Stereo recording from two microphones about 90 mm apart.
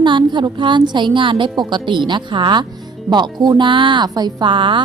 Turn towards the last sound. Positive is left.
turn(degrees=-65)  # may be behind; listen again after turning